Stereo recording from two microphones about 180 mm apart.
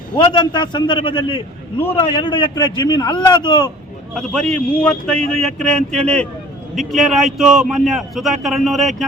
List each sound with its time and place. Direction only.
0.3 s speech: 25° left (ahead or behind)
4.1 s a man's voice: 5° left (ahead or behind)